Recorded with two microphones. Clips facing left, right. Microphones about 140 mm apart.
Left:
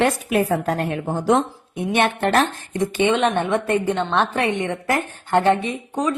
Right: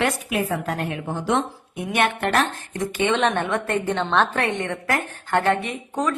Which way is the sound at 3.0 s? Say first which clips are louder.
Left 2 dB; 10° left (ahead or behind).